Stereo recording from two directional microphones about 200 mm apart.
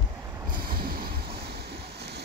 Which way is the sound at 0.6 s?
50° right (ahead or behind).